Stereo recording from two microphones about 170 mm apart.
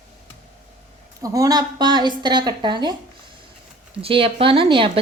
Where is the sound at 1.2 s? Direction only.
20° right (ahead or behind).